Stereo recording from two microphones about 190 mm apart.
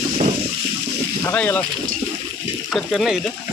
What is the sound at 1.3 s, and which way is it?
Speech, 10° left (ahead or behind).